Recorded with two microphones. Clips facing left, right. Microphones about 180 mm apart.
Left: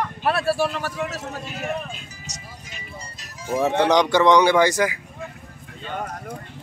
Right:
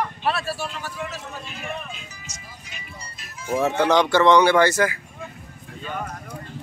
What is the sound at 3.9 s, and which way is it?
Speech, 15° left (ahead or behind).